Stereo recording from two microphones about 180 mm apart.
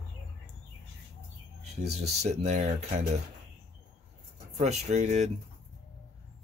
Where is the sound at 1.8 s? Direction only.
35° right (ahead or behind).